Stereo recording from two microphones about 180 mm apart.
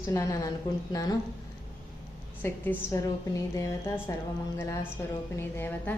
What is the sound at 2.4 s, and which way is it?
Speech, 15° left (ahead or behind).